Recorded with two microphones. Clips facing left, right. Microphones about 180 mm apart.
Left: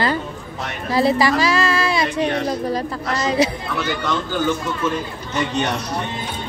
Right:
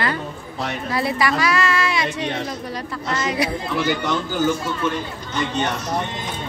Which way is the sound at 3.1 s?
30° left (ahead or behind).